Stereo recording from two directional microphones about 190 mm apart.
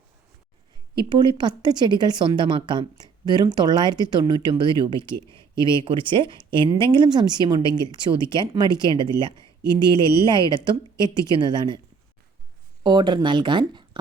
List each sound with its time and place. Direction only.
0.9 s speech: 25° right (ahead or behind)
12.8 s speech: 25° right (ahead or behind)